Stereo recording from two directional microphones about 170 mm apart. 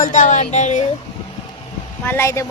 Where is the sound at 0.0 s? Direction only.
50° left (ahead or behind).